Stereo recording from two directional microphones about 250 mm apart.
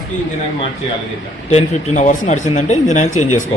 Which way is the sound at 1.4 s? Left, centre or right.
Left.